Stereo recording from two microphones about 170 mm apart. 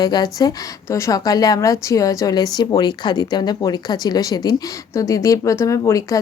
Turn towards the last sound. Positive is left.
turn(degrees=20)  # may be behind; listen again after turning